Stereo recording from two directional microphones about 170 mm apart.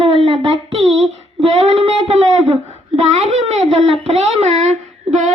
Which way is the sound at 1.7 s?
35° right (ahead or behind).